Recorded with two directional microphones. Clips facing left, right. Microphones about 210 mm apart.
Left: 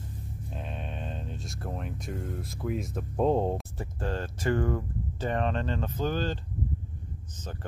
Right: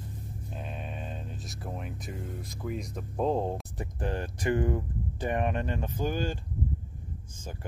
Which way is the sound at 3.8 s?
15° right (ahead or behind).